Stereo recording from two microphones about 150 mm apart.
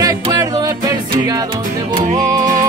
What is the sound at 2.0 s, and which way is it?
Music, 55° right (ahead or behind).